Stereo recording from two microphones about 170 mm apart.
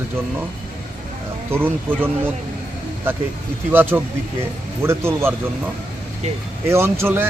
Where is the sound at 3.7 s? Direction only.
10° right (ahead or behind).